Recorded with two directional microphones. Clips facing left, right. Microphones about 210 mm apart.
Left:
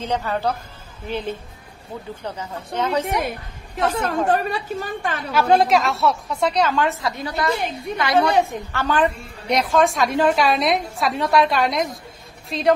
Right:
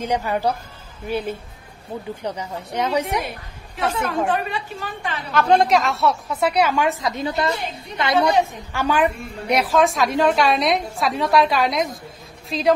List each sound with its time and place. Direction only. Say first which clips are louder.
0.0 s a woman's voice: right 1 dB; 15° right (ahead or behind)
4.3 s a woman's voice: left 3 dB; 45° left (ahead or behind)
5.3 s a woman's voice: even; 5° left (ahead or behind); by 8.1 s 25° right (ahead or behind)
8.7 s a woman's voice: right 1 dB; 10° right (ahead or behind)